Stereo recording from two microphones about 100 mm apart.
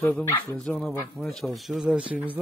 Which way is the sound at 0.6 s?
5° left (ahead or behind).